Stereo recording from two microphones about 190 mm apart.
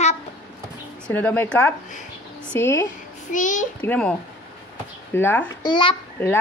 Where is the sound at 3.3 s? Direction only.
40° left (ahead or behind).